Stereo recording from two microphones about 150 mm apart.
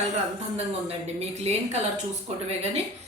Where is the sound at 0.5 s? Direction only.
45° right (ahead or behind).